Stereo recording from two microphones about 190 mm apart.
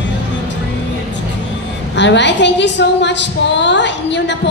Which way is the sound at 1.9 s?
65° left (ahead or behind).